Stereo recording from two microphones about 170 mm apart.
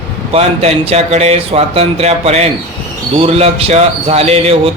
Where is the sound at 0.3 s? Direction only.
35° right (ahead or behind).